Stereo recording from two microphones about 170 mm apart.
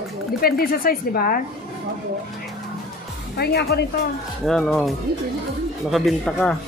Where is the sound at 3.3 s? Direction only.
70° left (ahead or behind).